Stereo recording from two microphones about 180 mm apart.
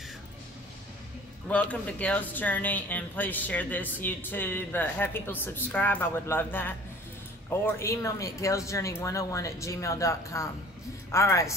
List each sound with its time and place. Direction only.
1.5 s speech: 10° left (ahead or behind)